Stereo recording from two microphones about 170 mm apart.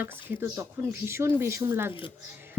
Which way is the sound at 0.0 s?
10° right (ahead or behind).